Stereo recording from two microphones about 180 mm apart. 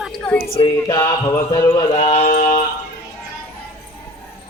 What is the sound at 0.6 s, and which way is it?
Speech, 25° left (ahead or behind).